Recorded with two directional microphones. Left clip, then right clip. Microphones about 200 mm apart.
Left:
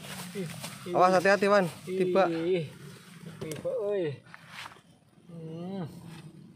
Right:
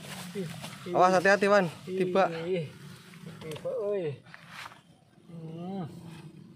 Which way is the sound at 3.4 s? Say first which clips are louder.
Left 1 dB; 25° left (ahead or behind).